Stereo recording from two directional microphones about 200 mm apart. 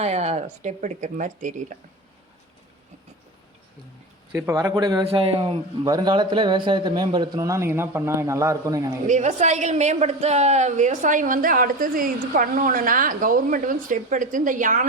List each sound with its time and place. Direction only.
0.0 s speech: 35° right (ahead or behind)
4.3 s a man's voice: 15° right (ahead or behind)
9.0 s speech: 35° right (ahead or behind)